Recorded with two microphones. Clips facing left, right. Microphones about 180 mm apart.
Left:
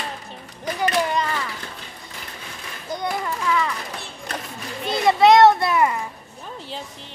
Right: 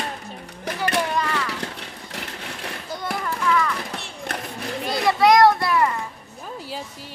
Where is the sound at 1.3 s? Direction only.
75° right (ahead or behind).